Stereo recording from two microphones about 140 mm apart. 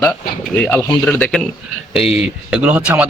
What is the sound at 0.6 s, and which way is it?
Speech, 15° left (ahead or behind).